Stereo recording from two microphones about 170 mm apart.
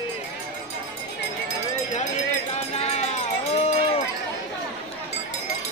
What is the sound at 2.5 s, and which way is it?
Run, 40° left (ahead or behind).